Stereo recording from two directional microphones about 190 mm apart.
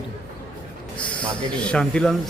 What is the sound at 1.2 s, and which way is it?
Speech, 5° left (ahead or behind).